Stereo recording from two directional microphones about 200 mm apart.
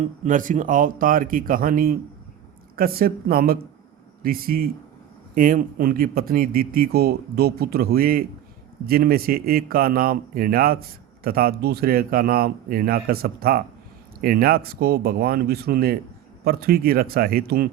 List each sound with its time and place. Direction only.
0.3 s a man's voice: 40° right (ahead or behind)